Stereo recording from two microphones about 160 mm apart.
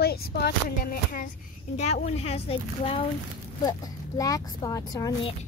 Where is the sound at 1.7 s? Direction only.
45° left (ahead or behind).